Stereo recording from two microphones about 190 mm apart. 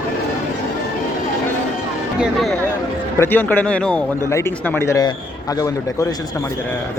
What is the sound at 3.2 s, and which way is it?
A man's voice, 10° left (ahead or behind).